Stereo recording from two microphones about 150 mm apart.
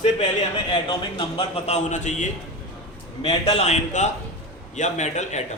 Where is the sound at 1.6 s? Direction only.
50° left (ahead or behind).